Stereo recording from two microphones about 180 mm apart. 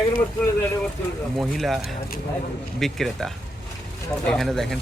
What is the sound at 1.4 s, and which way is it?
Speech, centre (ahead or behind).